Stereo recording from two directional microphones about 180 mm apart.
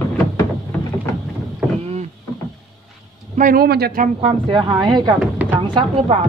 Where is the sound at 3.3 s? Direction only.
50° right (ahead or behind).